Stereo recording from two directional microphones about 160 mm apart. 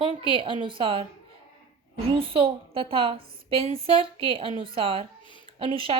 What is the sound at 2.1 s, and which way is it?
Speech, 35° right (ahead or behind).